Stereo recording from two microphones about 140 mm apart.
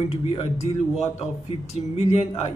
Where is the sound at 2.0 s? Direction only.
50° left (ahead or behind).